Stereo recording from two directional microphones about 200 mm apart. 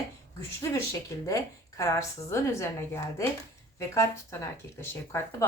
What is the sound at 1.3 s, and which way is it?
Speech, 15° left (ahead or behind).